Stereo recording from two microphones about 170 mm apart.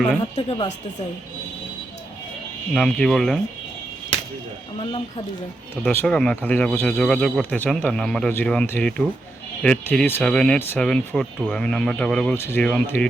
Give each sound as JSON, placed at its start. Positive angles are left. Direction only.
{"t": 0.2, "sound": "speech", "side_deg": 30}
{"t": 2.7, "sound": "speech", "side_deg": 5}
{"t": 4.8, "sound": "speech", "side_deg": 30}
{"t": 5.8, "sound": "speech", "side_deg": 10}